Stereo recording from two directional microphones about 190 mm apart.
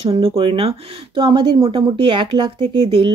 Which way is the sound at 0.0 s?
30° right (ahead or behind).